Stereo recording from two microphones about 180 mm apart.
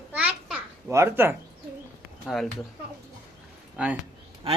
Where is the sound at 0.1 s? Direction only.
5° right (ahead or behind).